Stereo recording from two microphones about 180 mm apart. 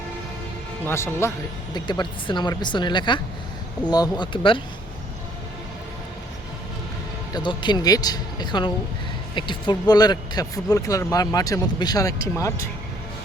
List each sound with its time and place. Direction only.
0.9 s speech: 15° left (ahead or behind)
1.7 s speech: 25° left (ahead or behind)
7.3 s speech: 25° left (ahead or behind)